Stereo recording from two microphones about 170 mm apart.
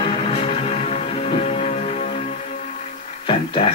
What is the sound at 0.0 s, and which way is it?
Music, 30° left (ahead or behind).